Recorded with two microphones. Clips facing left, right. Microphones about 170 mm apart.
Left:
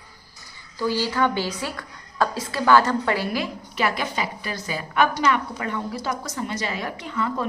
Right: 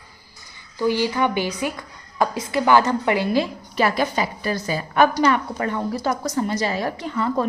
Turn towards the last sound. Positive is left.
turn(degrees=-40)  # may be behind; listen again after turning